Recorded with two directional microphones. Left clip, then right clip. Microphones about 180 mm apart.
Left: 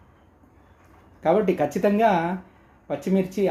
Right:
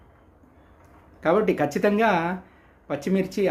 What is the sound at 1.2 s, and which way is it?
Speech, 15° right (ahead or behind).